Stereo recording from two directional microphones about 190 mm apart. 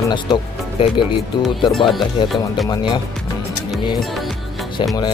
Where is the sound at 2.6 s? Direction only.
20° left (ahead or behind).